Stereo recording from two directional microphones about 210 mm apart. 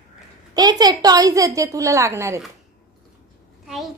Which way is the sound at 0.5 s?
20° right (ahead or behind).